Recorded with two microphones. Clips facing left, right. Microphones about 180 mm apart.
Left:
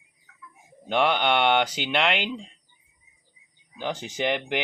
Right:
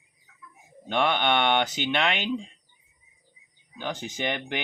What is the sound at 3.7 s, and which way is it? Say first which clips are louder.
Speech: left 2 dB; 5° left (ahead or behind).